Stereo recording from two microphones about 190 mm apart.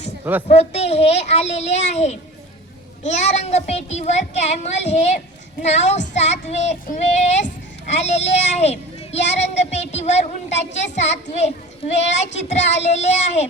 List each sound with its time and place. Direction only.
0.4 s speech: 35° left (ahead or behind)